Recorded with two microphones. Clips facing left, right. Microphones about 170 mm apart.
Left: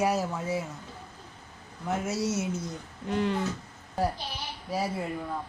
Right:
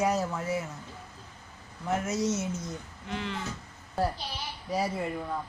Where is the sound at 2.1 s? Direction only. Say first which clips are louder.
Even; 10° left (ahead or behind).